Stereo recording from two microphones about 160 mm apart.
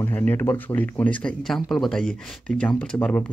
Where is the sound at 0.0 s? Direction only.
10° left (ahead or behind).